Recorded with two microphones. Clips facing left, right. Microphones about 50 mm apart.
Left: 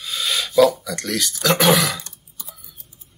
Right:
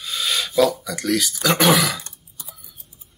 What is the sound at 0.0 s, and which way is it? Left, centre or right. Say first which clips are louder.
Speech: even; centre.